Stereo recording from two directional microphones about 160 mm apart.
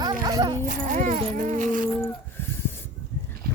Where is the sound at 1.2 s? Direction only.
50° right (ahead or behind).